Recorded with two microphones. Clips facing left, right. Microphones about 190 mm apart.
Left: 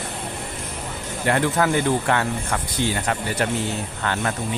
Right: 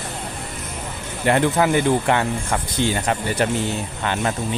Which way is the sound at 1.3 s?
20° right (ahead or behind).